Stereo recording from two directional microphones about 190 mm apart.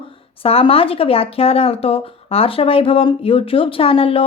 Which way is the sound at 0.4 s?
30° left (ahead or behind).